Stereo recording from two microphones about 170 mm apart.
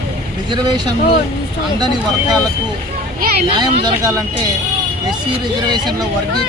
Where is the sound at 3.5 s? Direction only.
25° right (ahead or behind).